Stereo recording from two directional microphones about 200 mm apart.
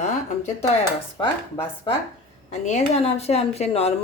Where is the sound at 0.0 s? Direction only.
35° left (ahead or behind).